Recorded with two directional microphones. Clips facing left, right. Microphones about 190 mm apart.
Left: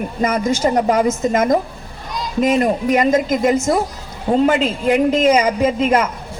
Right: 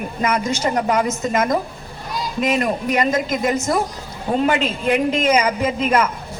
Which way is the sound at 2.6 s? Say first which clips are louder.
Left 4 dB; 25° left (ahead or behind).